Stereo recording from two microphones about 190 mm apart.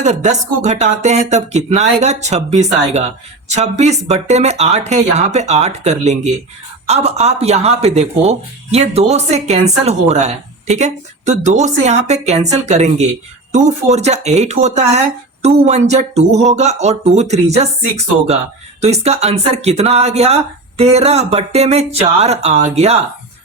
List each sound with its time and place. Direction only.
0.0 s speech: 40° right (ahead or behind)